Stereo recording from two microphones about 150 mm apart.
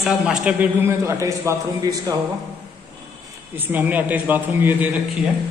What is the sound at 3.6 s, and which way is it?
A man's voice, 10° right (ahead or behind).